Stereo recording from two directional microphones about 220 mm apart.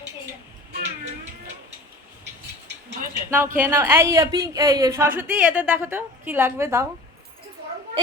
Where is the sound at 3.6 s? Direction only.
10° right (ahead or behind).